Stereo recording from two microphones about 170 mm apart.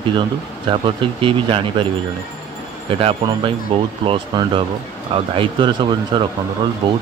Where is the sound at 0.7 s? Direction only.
30° right (ahead or behind).